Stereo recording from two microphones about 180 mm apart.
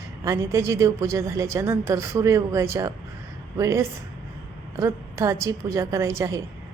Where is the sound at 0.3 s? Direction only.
15° right (ahead or behind).